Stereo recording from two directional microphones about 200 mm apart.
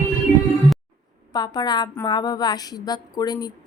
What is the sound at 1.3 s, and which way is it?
Speech, 20° left (ahead or behind).